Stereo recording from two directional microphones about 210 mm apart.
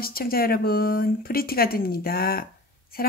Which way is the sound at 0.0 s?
45° left (ahead or behind).